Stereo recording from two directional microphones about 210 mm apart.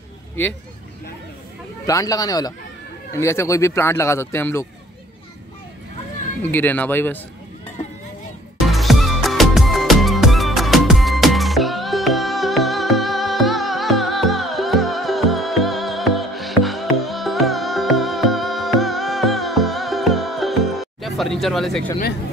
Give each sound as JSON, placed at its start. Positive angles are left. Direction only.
{"t": 1.9, "sound": "speech", "side_deg": 15}
{"t": 6.4, "sound": "speech", "side_deg": 10}
{"t": 8.6, "sound": "music", "side_deg": 0}